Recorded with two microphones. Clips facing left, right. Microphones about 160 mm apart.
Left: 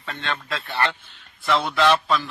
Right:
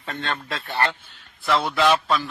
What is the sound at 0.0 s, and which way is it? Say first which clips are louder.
Speech: right 1 dB; 40° right (ahead or behind).